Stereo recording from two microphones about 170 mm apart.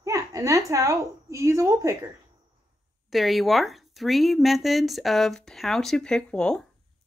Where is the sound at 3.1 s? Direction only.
Centre (ahead or behind).